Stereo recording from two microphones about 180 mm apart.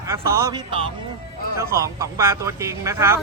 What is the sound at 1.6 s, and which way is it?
Speech, 15° right (ahead or behind).